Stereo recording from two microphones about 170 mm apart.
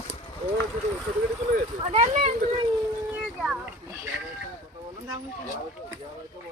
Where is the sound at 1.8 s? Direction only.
45° right (ahead or behind).